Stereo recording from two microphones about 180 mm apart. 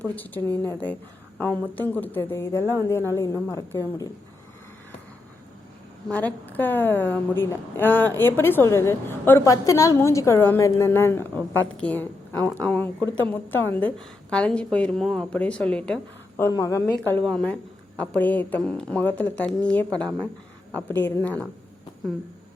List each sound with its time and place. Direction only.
0.0 s a woman's voice: 10° left (ahead or behind)
6.1 s a woman's voice: 10° left (ahead or behind)
16.6 s a woman's voice: 15° left (ahead or behind)